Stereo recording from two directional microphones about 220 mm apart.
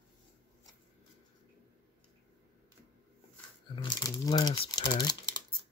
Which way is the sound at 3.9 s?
15° left (ahead or behind).